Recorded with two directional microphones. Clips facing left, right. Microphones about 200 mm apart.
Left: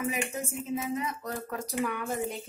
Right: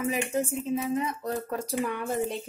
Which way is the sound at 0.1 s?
30° right (ahead or behind).